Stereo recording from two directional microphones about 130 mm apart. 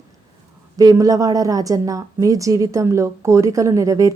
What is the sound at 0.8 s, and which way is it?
A woman's voice, 25° right (ahead or behind).